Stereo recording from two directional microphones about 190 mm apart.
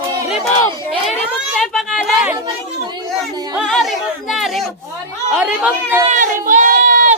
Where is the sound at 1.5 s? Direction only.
Centre (ahead or behind).